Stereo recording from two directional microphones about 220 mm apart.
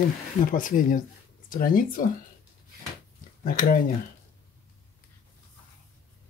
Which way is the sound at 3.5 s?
40° left (ahead or behind).